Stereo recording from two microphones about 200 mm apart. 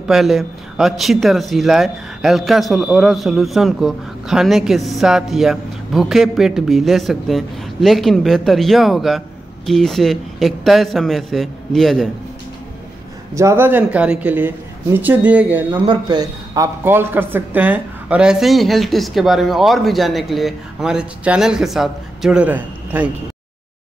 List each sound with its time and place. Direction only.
0.1 s speech: centre (ahead or behind)
13.3 s a man's voice: 15° right (ahead or behind)
15.9 s speech: 20° right (ahead or behind)